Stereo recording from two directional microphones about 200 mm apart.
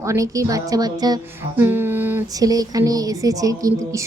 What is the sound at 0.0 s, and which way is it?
Speech, 15° right (ahead or behind).